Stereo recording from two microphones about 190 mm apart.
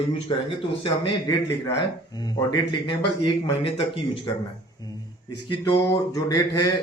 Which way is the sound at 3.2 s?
30° left (ahead or behind).